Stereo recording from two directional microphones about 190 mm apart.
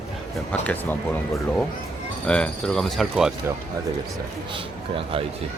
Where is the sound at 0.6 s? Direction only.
10° left (ahead or behind).